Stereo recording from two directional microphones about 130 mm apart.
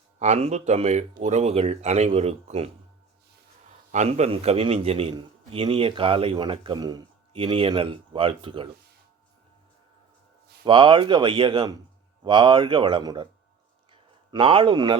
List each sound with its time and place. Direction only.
0.2 s speech: 55° right (ahead or behind)
3.9 s a man's voice: 60° right (ahead or behind); by 8.7 s 40° right (ahead or behind)
10.7 s speech: 40° right (ahead or behind)
13.9 s a sound: 40° right (ahead or behind)